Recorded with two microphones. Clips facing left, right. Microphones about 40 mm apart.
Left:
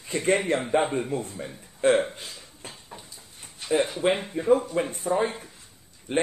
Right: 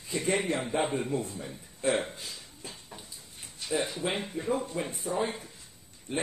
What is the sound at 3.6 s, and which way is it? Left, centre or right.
Speech, left.